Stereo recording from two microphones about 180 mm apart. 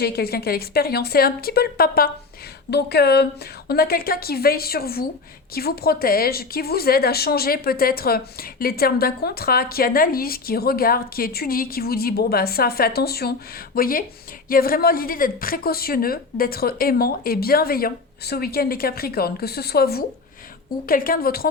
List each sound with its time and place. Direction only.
0.0 s a woman's voice: 60° left (ahead or behind)